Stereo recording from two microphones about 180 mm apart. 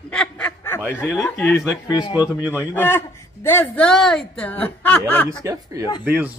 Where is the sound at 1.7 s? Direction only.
20° left (ahead or behind).